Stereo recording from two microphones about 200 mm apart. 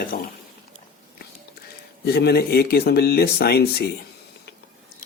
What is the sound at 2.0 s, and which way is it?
Speech, 55° left (ahead or behind).